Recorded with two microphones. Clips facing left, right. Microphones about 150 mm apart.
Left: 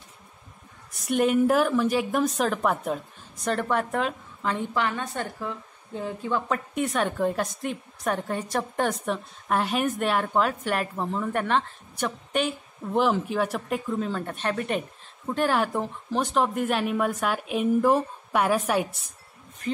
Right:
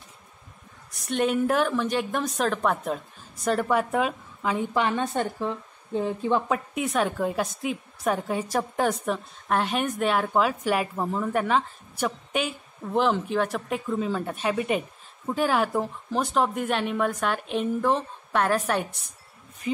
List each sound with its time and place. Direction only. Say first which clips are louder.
1.0 s a woman's voice: left 3 dB; 5° left (ahead or behind)
4.8 s a woman's voice: right 4 dB; 20° right (ahead or behind)
6.5 s a woman's voice: right 1 dB; centre (ahead or behind)